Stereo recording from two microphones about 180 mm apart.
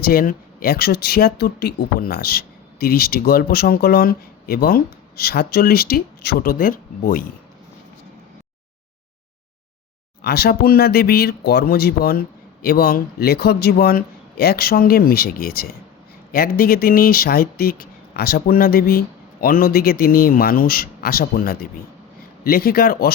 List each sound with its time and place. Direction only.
0.0 s speech: 55° left (ahead or behind)
10.2 s speech: 60° left (ahead or behind)